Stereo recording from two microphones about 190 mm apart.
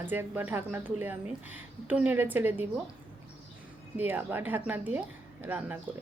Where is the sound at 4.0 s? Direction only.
10° right (ahead or behind).